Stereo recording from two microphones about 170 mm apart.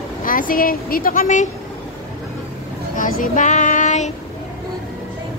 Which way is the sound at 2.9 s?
50° left (ahead or behind).